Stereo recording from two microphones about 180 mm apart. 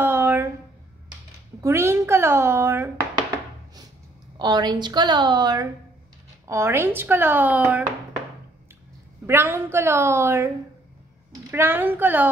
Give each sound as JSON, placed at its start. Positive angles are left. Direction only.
{"t": 0.0, "sound": "a sound", "side_deg": -10}
{"t": 1.6, "sound": "speech", "side_deg": -15}
{"t": 4.4, "sound": "a woman's voice", "side_deg": -25}
{"t": 9.2, "sound": "speech", "side_deg": -15}
{"t": 11.5, "sound": "speech", "side_deg": -10}